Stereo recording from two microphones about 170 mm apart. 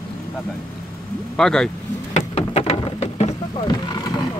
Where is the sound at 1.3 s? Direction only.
5° left (ahead or behind).